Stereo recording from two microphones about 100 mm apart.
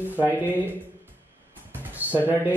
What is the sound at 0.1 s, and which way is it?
Speech, 20° right (ahead or behind).